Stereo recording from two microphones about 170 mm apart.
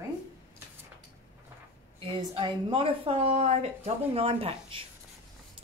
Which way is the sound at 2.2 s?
30° right (ahead or behind).